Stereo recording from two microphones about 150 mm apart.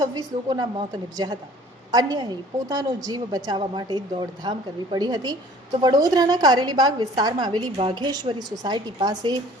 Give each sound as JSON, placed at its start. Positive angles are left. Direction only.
{"t": 0.0, "sound": "a woman's voice", "side_deg": -25}